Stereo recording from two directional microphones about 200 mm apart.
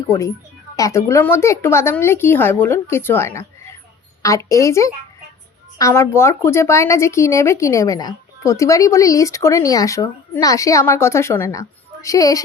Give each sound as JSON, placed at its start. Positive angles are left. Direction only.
{"t": 0.8, "sound": "speech", "side_deg": 15}